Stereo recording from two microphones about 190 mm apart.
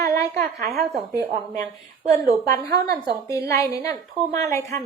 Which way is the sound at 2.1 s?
45° right (ahead or behind).